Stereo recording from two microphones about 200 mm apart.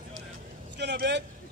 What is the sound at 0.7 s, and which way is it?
Vehicle, 55° right (ahead or behind).